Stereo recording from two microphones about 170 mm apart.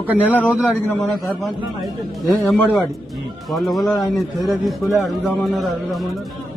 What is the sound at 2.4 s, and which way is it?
Speech, 20° left (ahead or behind).